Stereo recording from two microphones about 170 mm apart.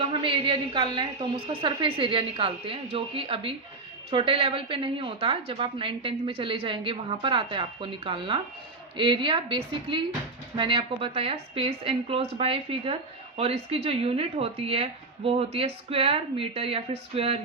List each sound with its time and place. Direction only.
0.0 s a woman's voice: 30° right (ahead or behind)